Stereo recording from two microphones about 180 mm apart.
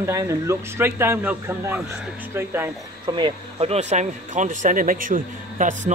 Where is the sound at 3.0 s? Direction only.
25° right (ahead or behind).